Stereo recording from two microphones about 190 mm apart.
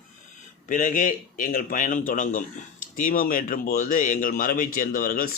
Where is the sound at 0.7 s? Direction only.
45° left (ahead or behind).